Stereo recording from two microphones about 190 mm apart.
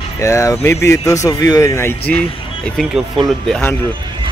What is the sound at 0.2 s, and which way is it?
Speech, 15° left (ahead or behind).